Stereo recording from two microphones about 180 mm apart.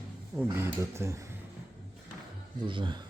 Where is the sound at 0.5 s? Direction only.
15° right (ahead or behind).